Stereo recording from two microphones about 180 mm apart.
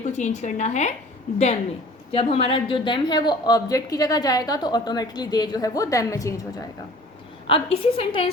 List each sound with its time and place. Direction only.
0.0 s a woman's voice: 40° left (ahead or behind)
2.1 s a woman's voice: 30° left (ahead or behind)
7.4 s a woman's voice: 30° left (ahead or behind)